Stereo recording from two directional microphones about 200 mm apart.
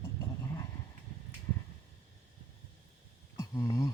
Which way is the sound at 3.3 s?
15° left (ahead or behind).